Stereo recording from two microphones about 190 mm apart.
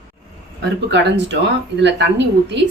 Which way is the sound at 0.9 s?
70° right (ahead or behind).